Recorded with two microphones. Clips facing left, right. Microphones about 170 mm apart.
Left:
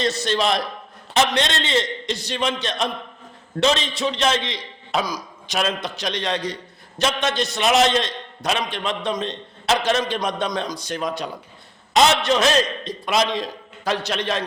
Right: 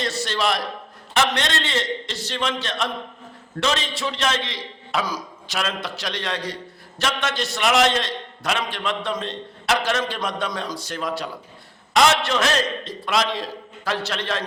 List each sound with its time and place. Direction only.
0.0 s a man's voice: 20° left (ahead or behind)